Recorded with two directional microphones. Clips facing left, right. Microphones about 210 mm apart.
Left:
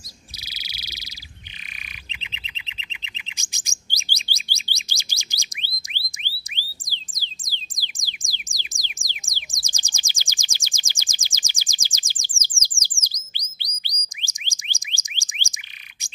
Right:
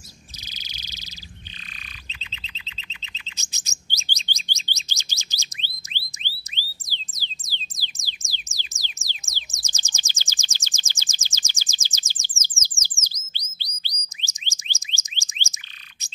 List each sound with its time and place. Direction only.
0.6 s frog: 10° left (ahead or behind)
2.0 s bird: 15° left (ahead or behind)
5.8 s music: 15° left (ahead or behind)
12.4 s bird: 15° left (ahead or behind)
14.2 s a sound: 15° left (ahead or behind)